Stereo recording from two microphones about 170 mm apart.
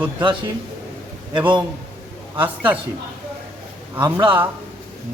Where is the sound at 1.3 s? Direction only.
30° right (ahead or behind).